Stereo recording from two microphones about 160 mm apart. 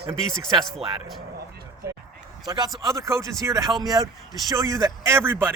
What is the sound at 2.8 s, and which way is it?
A man's voice, 20° right (ahead or behind).